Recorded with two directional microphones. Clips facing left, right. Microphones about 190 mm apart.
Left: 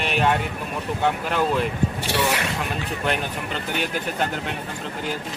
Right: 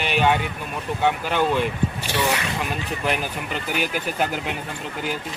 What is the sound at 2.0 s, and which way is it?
Speech, 70° left (ahead or behind).